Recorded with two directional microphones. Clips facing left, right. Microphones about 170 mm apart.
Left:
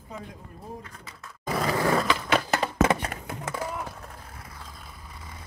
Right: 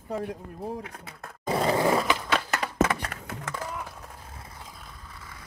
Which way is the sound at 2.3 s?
30° left (ahead or behind).